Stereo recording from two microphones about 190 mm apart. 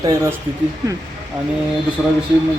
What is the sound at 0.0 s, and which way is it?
Speech, 15° right (ahead or behind).